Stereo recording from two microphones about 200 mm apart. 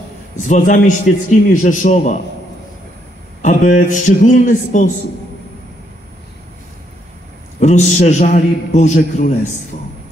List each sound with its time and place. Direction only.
0.5 s a man's voice: 40° left (ahead or behind)
3.4 s a man's voice: 40° left (ahead or behind)
7.6 s a man's voice: 35° left (ahead or behind)